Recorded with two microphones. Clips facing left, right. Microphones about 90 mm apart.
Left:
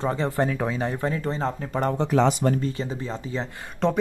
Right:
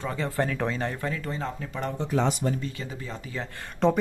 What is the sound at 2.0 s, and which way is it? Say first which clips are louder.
Speech: left 4 dB; 90° left.